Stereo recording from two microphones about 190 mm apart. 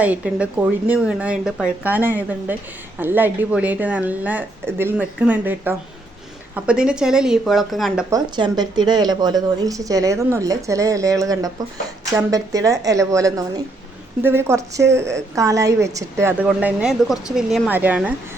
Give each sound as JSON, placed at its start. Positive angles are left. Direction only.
{"t": 0.0, "sound": "a woman's voice", "side_deg": -5}
{"t": 8.1, "sound": "a woman's voice", "side_deg": -20}